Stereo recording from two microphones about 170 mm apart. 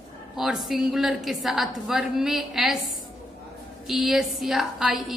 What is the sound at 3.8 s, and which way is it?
A woman's voice, centre (ahead or behind).